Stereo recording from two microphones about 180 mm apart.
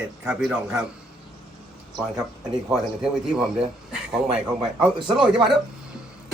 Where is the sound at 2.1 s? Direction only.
20° right (ahead or behind).